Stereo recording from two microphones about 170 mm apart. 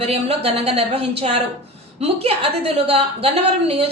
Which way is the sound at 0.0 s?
35° right (ahead or behind).